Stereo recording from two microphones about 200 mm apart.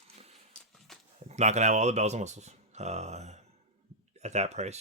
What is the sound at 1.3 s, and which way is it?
Speech, 35° right (ahead or behind).